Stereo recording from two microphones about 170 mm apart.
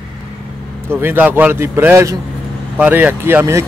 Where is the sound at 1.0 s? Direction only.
10° right (ahead or behind).